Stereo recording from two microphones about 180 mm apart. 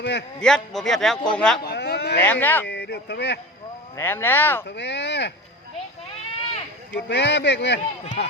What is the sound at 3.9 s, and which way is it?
Speech, 10° left (ahead or behind).